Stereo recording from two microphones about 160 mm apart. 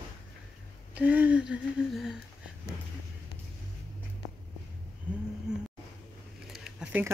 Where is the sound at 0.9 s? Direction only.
10° right (ahead or behind).